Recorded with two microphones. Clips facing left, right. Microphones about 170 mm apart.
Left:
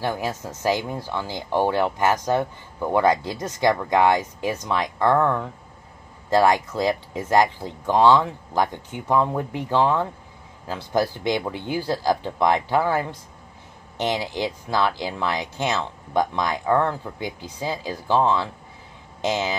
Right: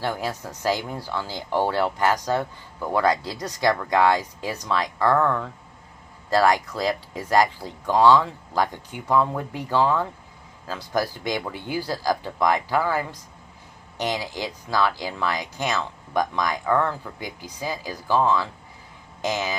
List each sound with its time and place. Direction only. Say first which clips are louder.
0.0 s speech: left 1 dB; 15° left (ahead or behind)